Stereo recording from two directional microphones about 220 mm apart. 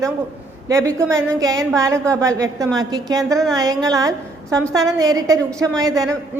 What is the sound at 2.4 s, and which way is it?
A woman's voice, 15° right (ahead or behind).